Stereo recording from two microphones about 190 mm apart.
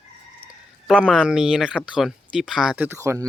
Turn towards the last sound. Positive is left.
turn(degrees=-15)  # may be behind; listen again after turning